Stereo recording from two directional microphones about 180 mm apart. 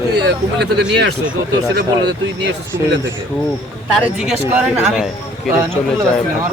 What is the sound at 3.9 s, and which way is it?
Speech, centre (ahead or behind).